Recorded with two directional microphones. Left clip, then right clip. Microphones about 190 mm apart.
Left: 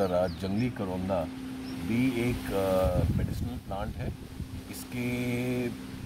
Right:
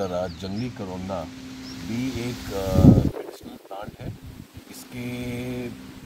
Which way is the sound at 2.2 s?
Centre (ahead or behind).